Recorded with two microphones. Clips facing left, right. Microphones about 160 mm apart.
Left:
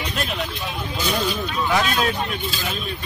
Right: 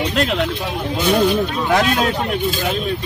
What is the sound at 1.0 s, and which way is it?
Speech, 55° right (ahead or behind).